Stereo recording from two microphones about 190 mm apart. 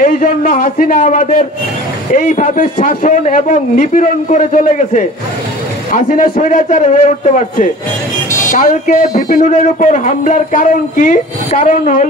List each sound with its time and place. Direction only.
0.0 s a man's voice: 45° left (ahead or behind)